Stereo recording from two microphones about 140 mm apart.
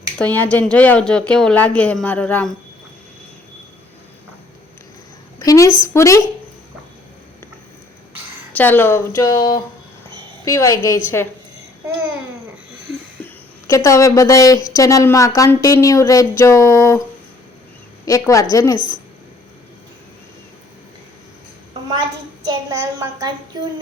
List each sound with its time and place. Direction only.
0.2 s speech: 10° left (ahead or behind)
5.4 s a woman's voice: 25° left (ahead or behind)
8.5 s a woman's voice: 15° left (ahead or behind)
13.2 s a woman's voice: 25° left (ahead or behind)
18.0 s a woman's voice: 25° left (ahead or behind)
22.4 s a woman's voice: 20° right (ahead or behind)